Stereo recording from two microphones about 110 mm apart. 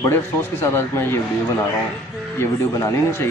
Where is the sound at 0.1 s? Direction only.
20° left (ahead or behind).